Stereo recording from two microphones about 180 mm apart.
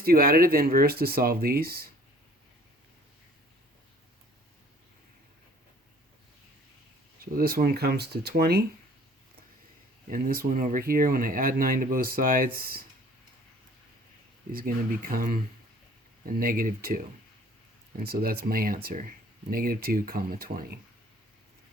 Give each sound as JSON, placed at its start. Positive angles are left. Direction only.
{"t": 0.0, "sound": "speech", "side_deg": -55}
{"t": 7.3, "sound": "speech", "side_deg": -55}
{"t": 10.1, "sound": "speech", "side_deg": -50}
{"t": 14.5, "sound": "speech", "side_deg": -55}
{"t": 18.0, "sound": "speech", "side_deg": -55}